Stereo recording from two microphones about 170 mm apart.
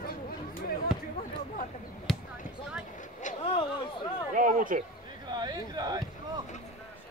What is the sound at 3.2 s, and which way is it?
Vehicle, 45° left (ahead or behind).